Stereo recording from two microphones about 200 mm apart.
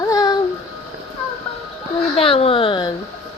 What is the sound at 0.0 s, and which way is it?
Music, 20° left (ahead or behind).